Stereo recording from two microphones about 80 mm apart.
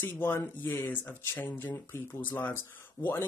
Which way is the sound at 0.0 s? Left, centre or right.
Left.